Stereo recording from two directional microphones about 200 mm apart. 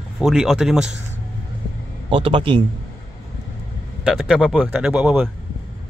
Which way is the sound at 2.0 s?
25° right (ahead or behind).